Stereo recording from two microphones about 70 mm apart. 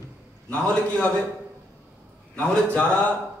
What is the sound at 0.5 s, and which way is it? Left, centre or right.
Speech, centre.